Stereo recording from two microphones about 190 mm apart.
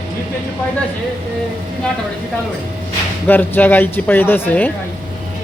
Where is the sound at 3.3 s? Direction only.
10° left (ahead or behind).